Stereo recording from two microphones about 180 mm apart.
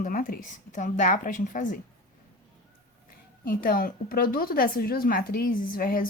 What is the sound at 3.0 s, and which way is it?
A woman's voice, 50° left (ahead or behind).